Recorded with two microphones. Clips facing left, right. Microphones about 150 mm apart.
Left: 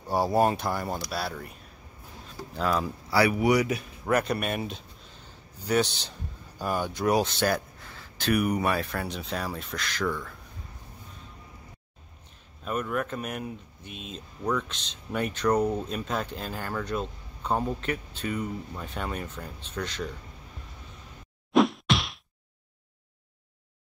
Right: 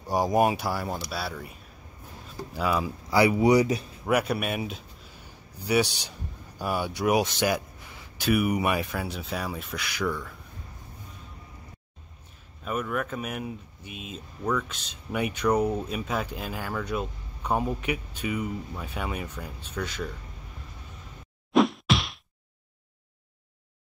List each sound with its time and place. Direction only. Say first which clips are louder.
0.0 s speech: right 1 dB; 15° right (ahead or behind)
2.5 s speech: even; 5° right (ahead or behind)
3.1 s speech: right 3 dB; 20° right (ahead or behind)
4.0 s speech: even; 5° right (ahead or behind)
12.6 s speech: even; centre (ahead or behind)
21.5 s whack: even; centre (ahead or behind)